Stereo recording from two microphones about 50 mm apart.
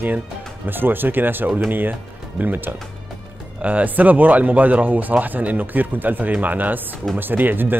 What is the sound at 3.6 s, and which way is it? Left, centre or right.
Speech, right.